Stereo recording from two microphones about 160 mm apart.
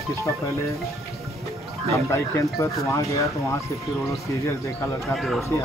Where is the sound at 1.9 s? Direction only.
20° left (ahead or behind).